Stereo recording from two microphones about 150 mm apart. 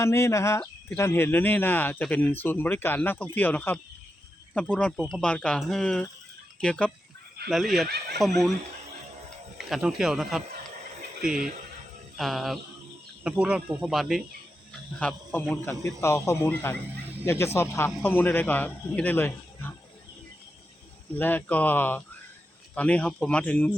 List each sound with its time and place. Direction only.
0.0 s speech: 20° left (ahead or behind); by 7.9 s centre (ahead or behind)
7.9 s speech: 90° right
8.2 s speech: centre (ahead or behind)
9.6 s speech: centre (ahead or behind); by 19.7 s 15° left (ahead or behind)
21.1 s speech: 10° left (ahead or behind)